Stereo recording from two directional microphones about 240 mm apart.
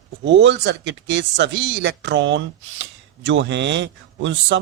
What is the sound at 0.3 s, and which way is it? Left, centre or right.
Speech, right.